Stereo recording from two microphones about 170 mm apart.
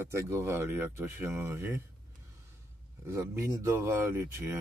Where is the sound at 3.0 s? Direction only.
15° right (ahead or behind).